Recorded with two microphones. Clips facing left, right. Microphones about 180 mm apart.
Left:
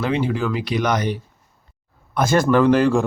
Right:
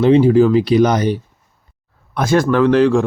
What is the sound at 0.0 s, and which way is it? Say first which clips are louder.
Speech: right 11 dB; 35° right (ahead or behind).